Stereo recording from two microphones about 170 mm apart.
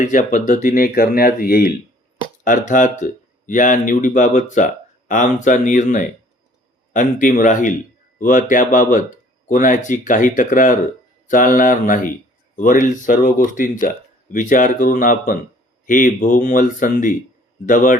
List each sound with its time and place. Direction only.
0.0 s speech: 45° left (ahead or behind)
2.4 s speech: 50° left (ahead or behind)